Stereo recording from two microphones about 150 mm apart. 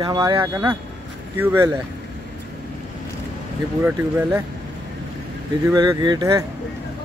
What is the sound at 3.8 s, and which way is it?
Speech, 10° right (ahead or behind).